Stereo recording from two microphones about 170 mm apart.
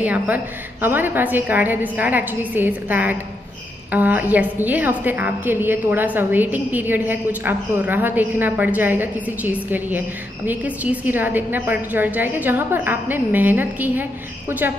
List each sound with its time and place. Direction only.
0.0 s a woman's voice: 10° right (ahead or behind)